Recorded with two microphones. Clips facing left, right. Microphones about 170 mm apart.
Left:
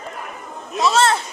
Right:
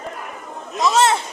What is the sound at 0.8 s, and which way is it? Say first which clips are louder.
Speech: even; 15° right (ahead or behind).